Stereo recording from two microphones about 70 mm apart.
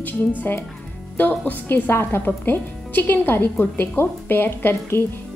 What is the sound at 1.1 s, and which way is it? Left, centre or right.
A woman's voice, left.